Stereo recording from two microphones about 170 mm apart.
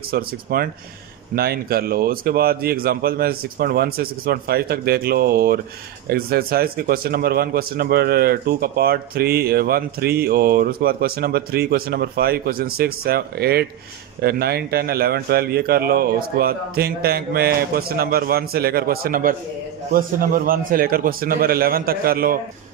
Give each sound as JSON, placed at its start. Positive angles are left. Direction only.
{"t": 0.1, "sound": "a man's voice", "side_deg": -60}